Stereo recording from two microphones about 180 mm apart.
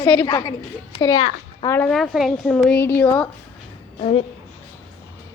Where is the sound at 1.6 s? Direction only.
15° left (ahead or behind).